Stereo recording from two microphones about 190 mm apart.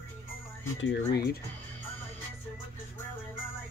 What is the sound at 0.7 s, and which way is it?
Speech, 65° left (ahead or behind).